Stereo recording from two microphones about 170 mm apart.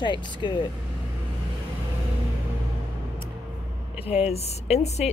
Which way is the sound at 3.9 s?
35° left (ahead or behind).